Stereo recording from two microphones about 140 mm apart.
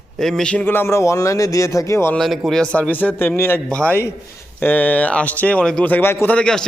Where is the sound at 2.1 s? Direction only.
Centre (ahead or behind).